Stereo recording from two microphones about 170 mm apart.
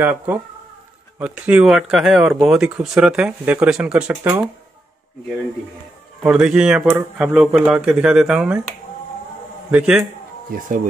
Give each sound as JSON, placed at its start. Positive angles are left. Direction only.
{"t": 0.0, "sound": "speech", "side_deg": -10}
{"t": 6.2, "sound": "speech", "side_deg": -5}
{"t": 9.7, "sound": "speech", "side_deg": -5}
{"t": 10.5, "sound": "speech", "side_deg": -60}